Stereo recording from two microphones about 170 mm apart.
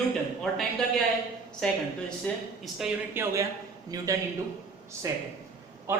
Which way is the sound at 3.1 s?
15° right (ahead or behind).